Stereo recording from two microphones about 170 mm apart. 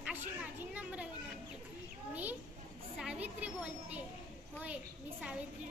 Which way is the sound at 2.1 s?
10° right (ahead or behind).